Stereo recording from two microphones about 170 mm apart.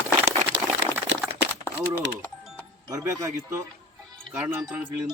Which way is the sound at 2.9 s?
20° right (ahead or behind).